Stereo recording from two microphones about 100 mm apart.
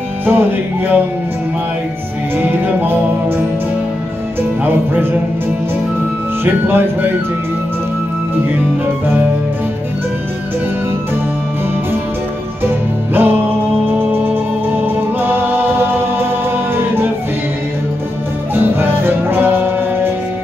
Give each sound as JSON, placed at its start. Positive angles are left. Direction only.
{"t": 0.2, "sound": "music", "side_deg": -20}
{"t": 2.3, "sound": "music", "side_deg": -20}
{"t": 6.4, "sound": "music", "side_deg": -20}
{"t": 12.6, "sound": "music", "side_deg": -20}
{"t": 18.5, "sound": "music", "side_deg": -20}